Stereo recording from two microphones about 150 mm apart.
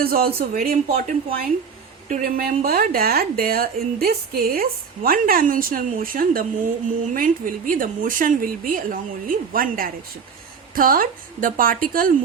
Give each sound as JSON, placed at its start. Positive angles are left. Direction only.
{"t": 0.0, "sound": "a woman's voice", "side_deg": -90}
{"t": 2.0, "sound": "a woman's voice", "side_deg": -65}
{"t": 5.0, "sound": "a woman's voice", "side_deg": -70}